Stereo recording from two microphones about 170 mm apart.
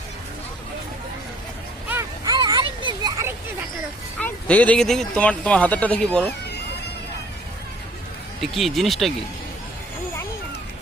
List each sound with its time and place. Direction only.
1.9 s a sound: 20° right (ahead or behind)
4.2 s speech: 10° left (ahead or behind)
8.4 s speech: centre (ahead or behind)